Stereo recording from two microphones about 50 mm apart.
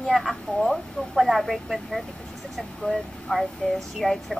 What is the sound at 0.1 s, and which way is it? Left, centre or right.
Speech, centre.